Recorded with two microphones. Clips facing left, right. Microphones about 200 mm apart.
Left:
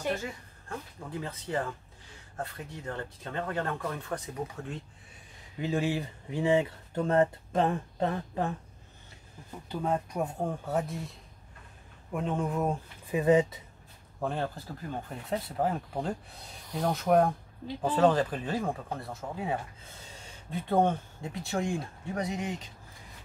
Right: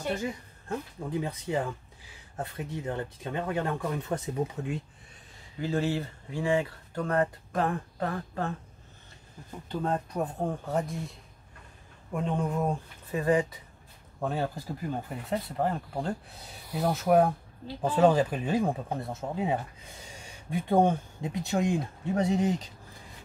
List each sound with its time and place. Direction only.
0.1 s a woman's voice: 15° right (ahead or behind)
5.6 s speech: 15° left (ahead or behind)
9.7 s speech: 10° left (ahead or behind)
13.1 s speech: 20° left (ahead or behind)
14.2 s speech: 5° right (ahead or behind)
15.2 s speech: centre (ahead or behind); by 22.7 s 35° right (ahead or behind)